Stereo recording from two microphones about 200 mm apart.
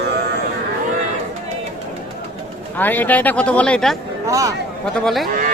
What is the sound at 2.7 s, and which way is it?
Speech, 10° left (ahead or behind).